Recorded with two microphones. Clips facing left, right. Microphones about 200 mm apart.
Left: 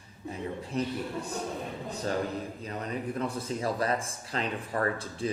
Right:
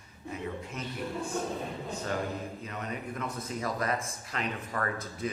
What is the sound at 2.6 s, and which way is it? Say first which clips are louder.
Speech: left 3 dB; 35° left (ahead or behind).